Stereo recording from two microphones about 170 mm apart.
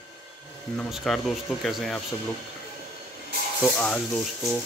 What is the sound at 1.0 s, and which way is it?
Speech, centre (ahead or behind).